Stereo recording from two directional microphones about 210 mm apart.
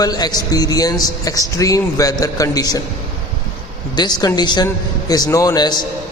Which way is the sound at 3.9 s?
20° left (ahead or behind).